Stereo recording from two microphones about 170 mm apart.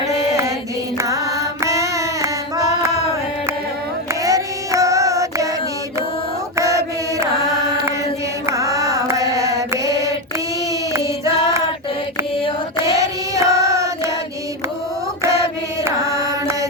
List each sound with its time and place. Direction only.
0.2 s mantra: 20° right (ahead or behind)
0.9 s carnatic music: 20° right (ahead or behind)
4.1 s child singing: 20° right (ahead or behind)
6.6 s mantra: 20° right (ahead or behind)
12.7 s child singing: 20° right (ahead or behind)
15.2 s mantra: 15° right (ahead or behind)